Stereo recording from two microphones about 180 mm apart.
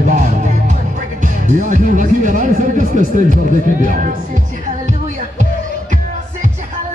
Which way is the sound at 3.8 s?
50° right (ahead or behind).